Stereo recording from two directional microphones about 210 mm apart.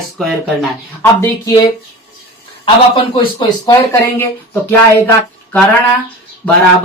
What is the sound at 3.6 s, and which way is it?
Speech, 10° left (ahead or behind).